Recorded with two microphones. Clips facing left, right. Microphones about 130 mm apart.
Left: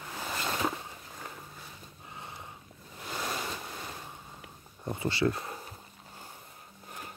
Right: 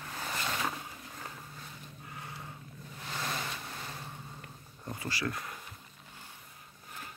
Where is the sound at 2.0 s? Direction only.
20° left (ahead or behind).